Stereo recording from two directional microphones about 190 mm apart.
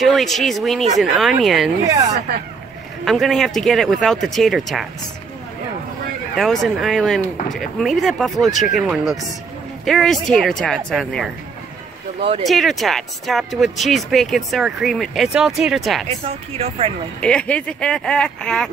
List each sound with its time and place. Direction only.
0.0 s speech: centre (ahead or behind)
3.1 s speech: centre (ahead or behind)
6.3 s speech: centre (ahead or behind)
12.4 s speech: centre (ahead or behind)
16.1 s speech: 35° right (ahead or behind)
17.2 s speech: 5° left (ahead or behind)